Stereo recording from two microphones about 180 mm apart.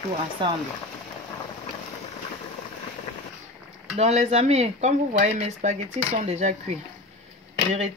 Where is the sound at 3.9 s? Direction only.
40° right (ahead or behind).